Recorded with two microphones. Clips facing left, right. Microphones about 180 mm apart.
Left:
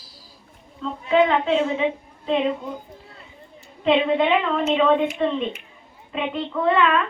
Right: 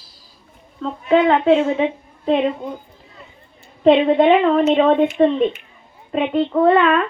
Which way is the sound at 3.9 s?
45° right (ahead or behind).